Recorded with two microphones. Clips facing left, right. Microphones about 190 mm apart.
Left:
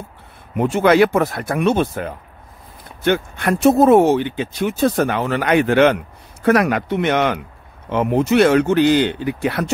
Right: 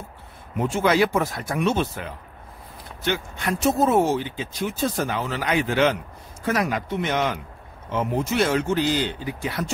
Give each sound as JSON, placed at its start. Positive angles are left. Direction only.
{"t": 0.6, "sound": "speech", "side_deg": 65}